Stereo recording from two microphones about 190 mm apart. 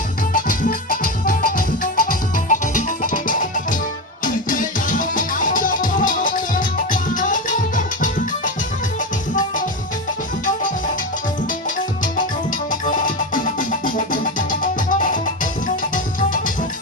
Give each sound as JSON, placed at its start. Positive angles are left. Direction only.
{"t": 0.3, "sound": "music", "side_deg": 45}
{"t": 13.3, "sound": "music", "side_deg": 45}